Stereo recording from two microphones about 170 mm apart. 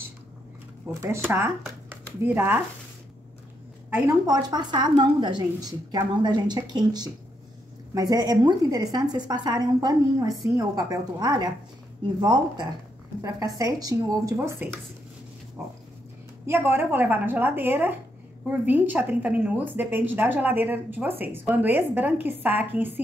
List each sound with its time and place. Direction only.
1.0 s a woman's voice: 15° right (ahead or behind)
4.1 s a woman's voice: 25° right (ahead or behind)
15.6 s dog: 10° right (ahead or behind)
16.4 s a woman's voice: 15° right (ahead or behind)